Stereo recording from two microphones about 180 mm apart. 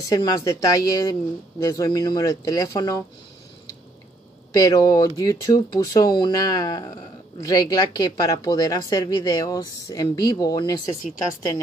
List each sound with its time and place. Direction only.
0.1 s speech: 20° left (ahead or behind)
4.5 s speech: 20° left (ahead or behind)